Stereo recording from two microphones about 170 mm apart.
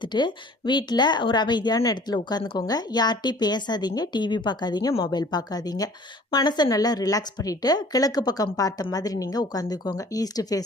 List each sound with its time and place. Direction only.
0.0 s a woman's voice: 25° left (ahead or behind)